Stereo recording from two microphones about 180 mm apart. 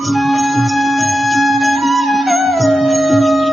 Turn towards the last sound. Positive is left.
turn(degrees=0)  # may be behind; listen again after turning